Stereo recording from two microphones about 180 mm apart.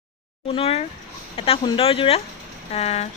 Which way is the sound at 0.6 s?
35° left (ahead or behind).